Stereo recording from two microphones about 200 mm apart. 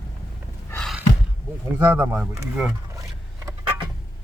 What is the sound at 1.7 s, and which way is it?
Speech, 20° right (ahead or behind).